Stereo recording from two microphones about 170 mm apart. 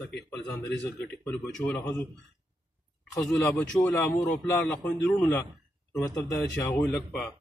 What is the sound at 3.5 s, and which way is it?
Speech, 15° left (ahead or behind).